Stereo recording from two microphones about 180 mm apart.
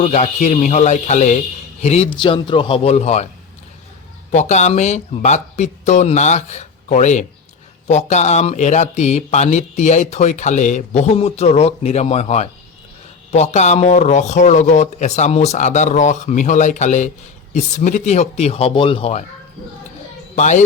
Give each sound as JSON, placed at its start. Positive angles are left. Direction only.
{"t": 0.0, "sound": "speech", "side_deg": 40}
{"t": 4.3, "sound": "speech", "side_deg": 40}
{"t": 20.3, "sound": "speech", "side_deg": 40}